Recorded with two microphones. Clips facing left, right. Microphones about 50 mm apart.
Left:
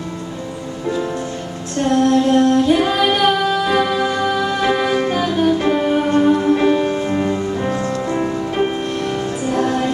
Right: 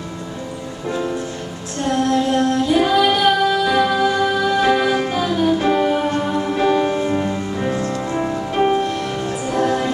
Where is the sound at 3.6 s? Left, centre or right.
Centre.